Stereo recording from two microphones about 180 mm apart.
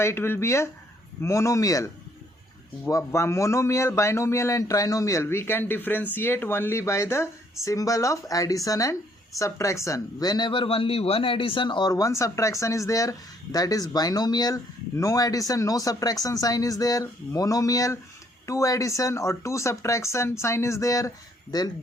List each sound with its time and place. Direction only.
0.0 s a man's voice: 15° left (ahead or behind)